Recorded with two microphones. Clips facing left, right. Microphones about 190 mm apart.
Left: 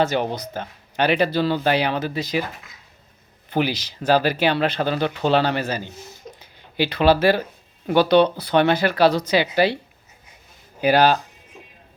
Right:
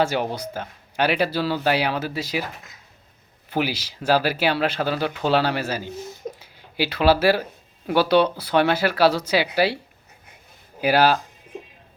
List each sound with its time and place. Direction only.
0.0 s speech: 5° right (ahead or behind)
3.5 s speech: 5° right (ahead or behind)
10.8 s speech: 5° right (ahead or behind)